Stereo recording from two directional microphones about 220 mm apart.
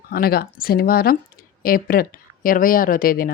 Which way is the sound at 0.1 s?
45° left (ahead or behind).